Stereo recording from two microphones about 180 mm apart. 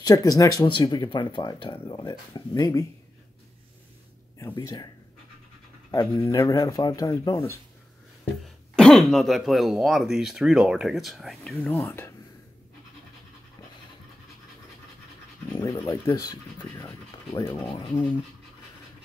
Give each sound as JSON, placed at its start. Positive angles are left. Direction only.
{"t": 0.0, "sound": "speech", "side_deg": 20}
{"t": 4.4, "sound": "speech", "side_deg": 15}
{"t": 5.9, "sound": "speech", "side_deg": 20}
{"t": 8.7, "sound": "speech", "side_deg": 0}
{"t": 15.5, "sound": "speech", "side_deg": 20}